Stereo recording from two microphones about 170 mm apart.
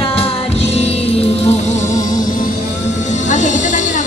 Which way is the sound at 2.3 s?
45° left (ahead or behind).